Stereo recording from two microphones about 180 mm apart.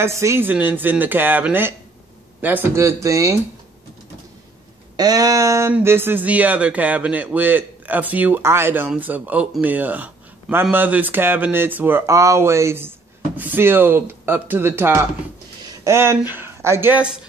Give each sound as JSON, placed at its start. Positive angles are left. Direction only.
{"t": 0.0, "sound": "speech", "side_deg": -15}
{"t": 4.9, "sound": "speech", "side_deg": -20}